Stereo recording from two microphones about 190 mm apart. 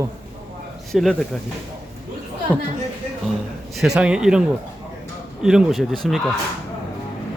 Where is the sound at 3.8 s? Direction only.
5° right (ahead or behind).